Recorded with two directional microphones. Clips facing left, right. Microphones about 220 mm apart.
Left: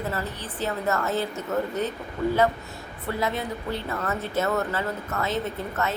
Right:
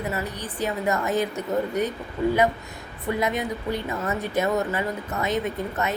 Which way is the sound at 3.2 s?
15° right (ahead or behind).